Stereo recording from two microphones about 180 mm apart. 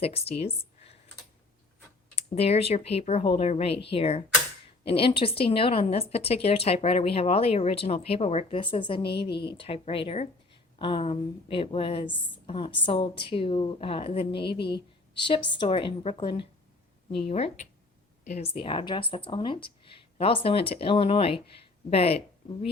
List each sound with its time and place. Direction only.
0.0 s a woman's voice: 35° left (ahead or behind)
0.8 s computer keyboard: 35° left (ahead or behind)
2.1 s a woman's voice: 35° left (ahead or behind)